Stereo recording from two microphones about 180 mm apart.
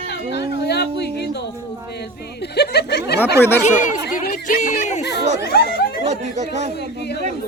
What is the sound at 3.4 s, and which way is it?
Speech, 15° left (ahead or behind).